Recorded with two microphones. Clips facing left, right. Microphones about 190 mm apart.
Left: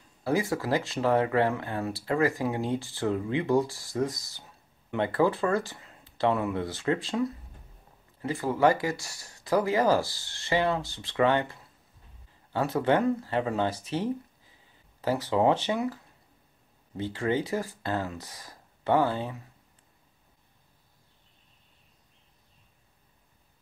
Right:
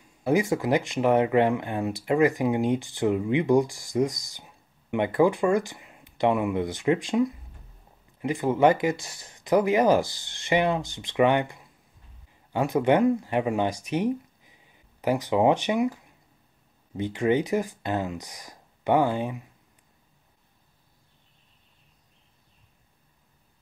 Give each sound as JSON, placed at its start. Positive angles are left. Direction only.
{"t": 0.2, "sound": "speech", "side_deg": -20}